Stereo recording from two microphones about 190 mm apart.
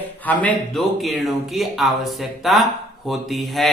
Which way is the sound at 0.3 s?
5° left (ahead or behind).